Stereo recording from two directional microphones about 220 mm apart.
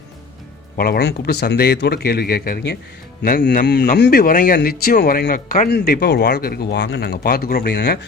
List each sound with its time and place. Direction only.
0.8 s speech: 45° left (ahead or behind)